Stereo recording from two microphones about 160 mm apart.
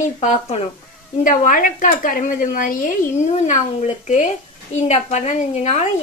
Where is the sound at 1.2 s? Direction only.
55° left (ahead or behind).